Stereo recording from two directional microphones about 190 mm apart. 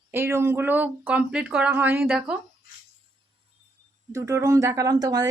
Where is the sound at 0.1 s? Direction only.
15° right (ahead or behind).